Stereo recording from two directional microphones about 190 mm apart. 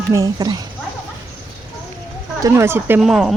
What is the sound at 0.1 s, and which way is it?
Speech, 15° right (ahead or behind).